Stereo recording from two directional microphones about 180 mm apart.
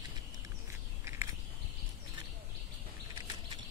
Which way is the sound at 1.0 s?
15° right (ahead or behind).